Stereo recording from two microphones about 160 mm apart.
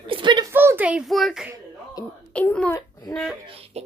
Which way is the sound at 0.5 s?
10° right (ahead or behind).